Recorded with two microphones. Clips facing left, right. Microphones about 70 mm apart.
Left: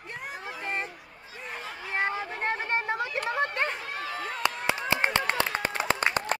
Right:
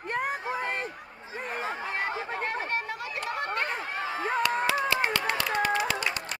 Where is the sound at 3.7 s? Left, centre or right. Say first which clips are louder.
Right 3 dB; right.